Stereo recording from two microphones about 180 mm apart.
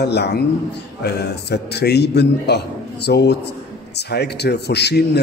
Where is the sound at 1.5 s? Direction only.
65° left (ahead or behind).